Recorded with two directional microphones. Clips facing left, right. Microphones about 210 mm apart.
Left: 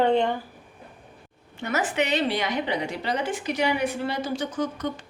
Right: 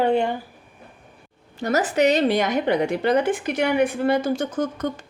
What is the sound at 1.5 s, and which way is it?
A woman's voice, 40° right (ahead or behind).